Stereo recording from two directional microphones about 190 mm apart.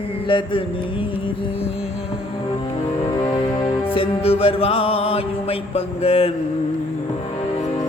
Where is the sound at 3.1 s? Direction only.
20° left (ahead or behind).